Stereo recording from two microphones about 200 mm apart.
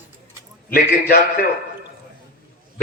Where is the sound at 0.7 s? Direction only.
50° left (ahead or behind).